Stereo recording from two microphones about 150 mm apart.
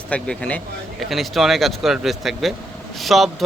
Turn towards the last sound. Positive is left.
turn(degrees=0)  # may be behind; listen again after turning